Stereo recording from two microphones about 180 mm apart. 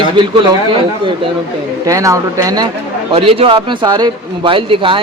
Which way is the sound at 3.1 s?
30° right (ahead or behind).